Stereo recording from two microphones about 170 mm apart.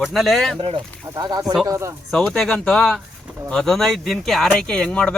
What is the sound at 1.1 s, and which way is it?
Speech, 20° right (ahead or behind).